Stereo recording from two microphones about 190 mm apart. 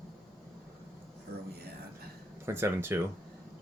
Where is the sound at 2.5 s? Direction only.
15° right (ahead or behind).